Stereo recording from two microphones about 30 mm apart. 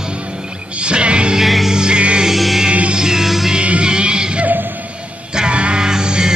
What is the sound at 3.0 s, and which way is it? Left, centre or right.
Music, centre.